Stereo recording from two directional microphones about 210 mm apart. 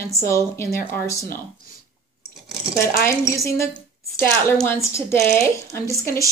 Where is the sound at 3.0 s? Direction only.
15° left (ahead or behind).